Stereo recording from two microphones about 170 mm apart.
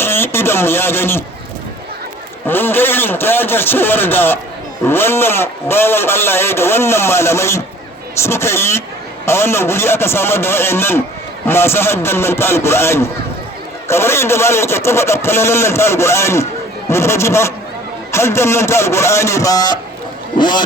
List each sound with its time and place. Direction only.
0.0 s a man's voice: 15° left (ahead or behind)
2.5 s a man's voice: 10° left (ahead or behind)